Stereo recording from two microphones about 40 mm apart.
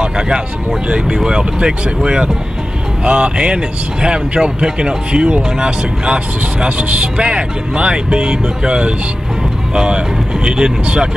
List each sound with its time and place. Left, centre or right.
1.0 s speech: right
7.2 s speech: right